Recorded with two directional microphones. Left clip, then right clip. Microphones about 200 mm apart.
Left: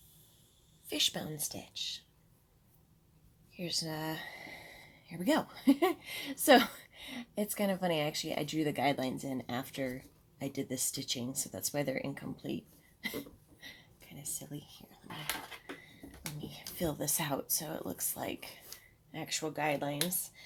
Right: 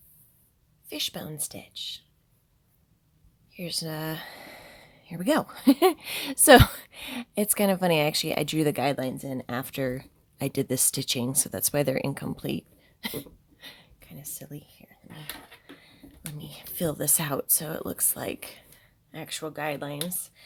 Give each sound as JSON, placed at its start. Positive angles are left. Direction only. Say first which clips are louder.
{"t": 0.9, "sound": "speech", "louder": "even", "side_deg": -15}
{"t": 3.5, "sound": "speech", "louder": "right 4 dB", "side_deg": -35}
{"t": 13.6, "sound": "a sound", "louder": "right 5 dB", "side_deg": -40}
{"t": 16.5, "sound": "speech", "louder": "right 7 dB", "side_deg": -45}
{"t": 19.1, "sound": "speech", "louder": "right 2 dB", "side_deg": -30}